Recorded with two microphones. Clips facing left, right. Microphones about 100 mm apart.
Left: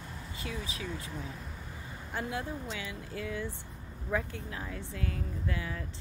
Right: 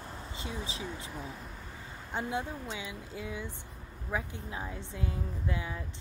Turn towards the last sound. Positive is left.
turn(degrees=-20)  # may be behind; listen again after turning